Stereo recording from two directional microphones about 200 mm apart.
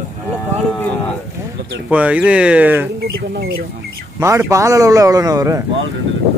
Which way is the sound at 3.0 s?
50° right (ahead or behind).